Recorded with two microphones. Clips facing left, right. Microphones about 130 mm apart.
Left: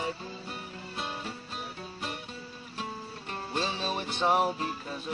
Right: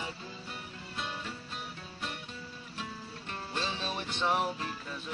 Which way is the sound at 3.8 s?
40° left (ahead or behind).